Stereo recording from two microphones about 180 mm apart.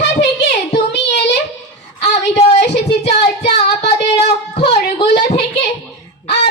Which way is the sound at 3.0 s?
35° left (ahead or behind).